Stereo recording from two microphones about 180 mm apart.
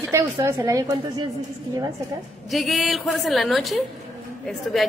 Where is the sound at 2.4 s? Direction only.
Centre (ahead or behind).